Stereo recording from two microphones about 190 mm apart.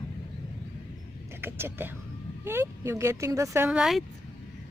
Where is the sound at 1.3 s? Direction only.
10° right (ahead or behind).